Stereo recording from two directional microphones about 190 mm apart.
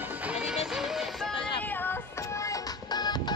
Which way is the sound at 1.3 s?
25° left (ahead or behind).